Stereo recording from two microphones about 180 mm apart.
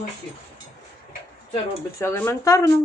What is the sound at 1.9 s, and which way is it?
Speech, 10° left (ahead or behind).